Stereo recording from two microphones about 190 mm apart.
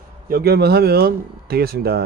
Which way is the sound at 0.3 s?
55° right (ahead or behind).